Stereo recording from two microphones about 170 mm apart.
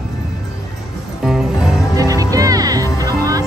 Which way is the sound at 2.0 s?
20° right (ahead or behind).